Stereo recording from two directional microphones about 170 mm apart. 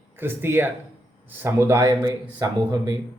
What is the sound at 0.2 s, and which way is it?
Speech, 15° right (ahead or behind).